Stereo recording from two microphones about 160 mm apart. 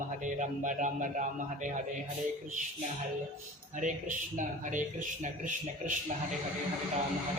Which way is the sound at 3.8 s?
55° right (ahead or behind).